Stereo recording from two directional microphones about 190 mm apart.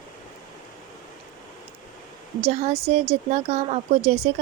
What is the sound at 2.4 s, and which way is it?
Speech, 35° right (ahead or behind).